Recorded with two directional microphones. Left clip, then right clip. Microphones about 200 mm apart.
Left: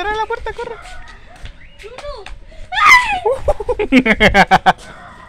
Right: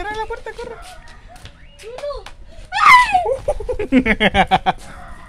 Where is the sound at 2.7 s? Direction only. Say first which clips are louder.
Even; 25° right (ahead or behind).